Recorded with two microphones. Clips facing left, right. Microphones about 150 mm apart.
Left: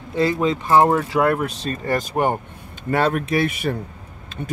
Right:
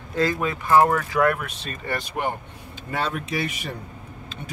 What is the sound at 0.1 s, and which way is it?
Speech, 20° left (ahead or behind).